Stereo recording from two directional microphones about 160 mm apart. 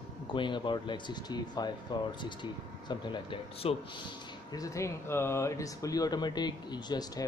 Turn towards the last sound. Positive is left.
turn(degrees=25)  # may be behind; listen again after turning